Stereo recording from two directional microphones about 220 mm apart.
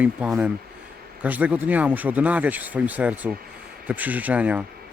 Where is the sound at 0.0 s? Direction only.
5° right (ahead or behind).